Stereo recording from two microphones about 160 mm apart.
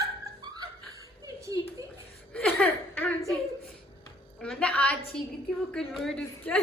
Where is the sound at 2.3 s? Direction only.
5° left (ahead or behind).